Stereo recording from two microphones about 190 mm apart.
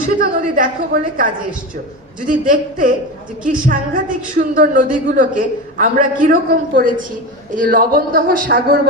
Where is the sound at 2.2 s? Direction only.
45° right (ahead or behind).